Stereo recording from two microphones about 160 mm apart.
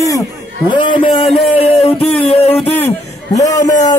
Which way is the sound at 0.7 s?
30° left (ahead or behind).